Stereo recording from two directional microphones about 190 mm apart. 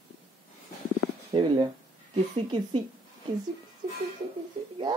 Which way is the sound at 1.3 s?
30° right (ahead or behind).